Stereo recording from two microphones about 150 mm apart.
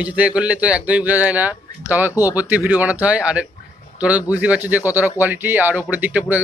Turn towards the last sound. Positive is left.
turn(degrees=-10)  # may be behind; listen again after turning